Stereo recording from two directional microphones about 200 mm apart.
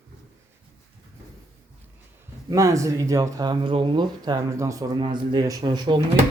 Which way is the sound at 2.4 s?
15° right (ahead or behind).